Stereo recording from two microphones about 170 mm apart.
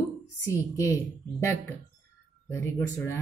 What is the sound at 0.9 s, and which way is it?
Speech, 20° left (ahead or behind).